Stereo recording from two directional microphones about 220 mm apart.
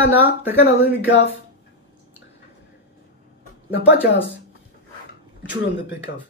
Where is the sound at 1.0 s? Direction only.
55° left (ahead or behind).